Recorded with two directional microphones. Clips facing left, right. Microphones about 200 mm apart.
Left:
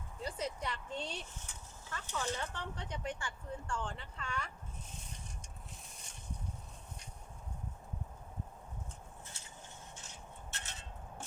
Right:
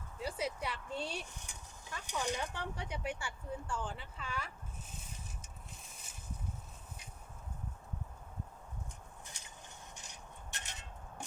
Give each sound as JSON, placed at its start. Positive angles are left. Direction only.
{"t": 0.2, "sound": "speech", "side_deg": -10}
{"t": 5.1, "sound": "vehicle", "side_deg": -5}
{"t": 9.2, "sound": "a sound", "side_deg": -15}